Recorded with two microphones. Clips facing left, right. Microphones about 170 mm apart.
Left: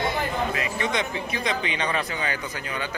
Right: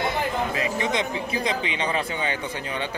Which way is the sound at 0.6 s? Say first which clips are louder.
Right 2 dB; 25° right (ahead or behind).